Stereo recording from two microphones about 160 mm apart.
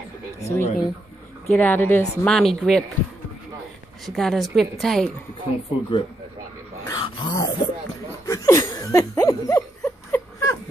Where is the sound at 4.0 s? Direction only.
Centre (ahead or behind).